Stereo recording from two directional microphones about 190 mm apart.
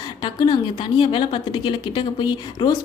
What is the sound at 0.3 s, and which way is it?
A woman's voice, 25° left (ahead or behind).